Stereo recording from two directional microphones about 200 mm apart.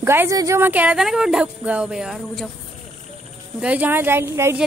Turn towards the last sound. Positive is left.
turn(degrees=-10)  # may be behind; listen again after turning